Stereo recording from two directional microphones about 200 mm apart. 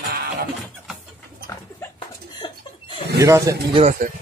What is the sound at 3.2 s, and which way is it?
Speech, 15° right (ahead or behind).